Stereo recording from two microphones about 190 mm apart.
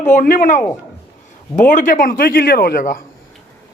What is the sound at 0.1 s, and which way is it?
Speech, 45° left (ahead or behind).